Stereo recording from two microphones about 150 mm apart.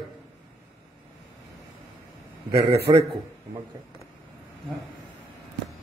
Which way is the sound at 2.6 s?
90° right.